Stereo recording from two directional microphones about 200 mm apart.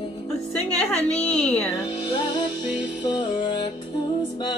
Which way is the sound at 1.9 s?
20° left (ahead or behind).